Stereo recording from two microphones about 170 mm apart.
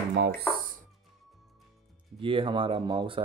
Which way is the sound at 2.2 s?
30° right (ahead or behind).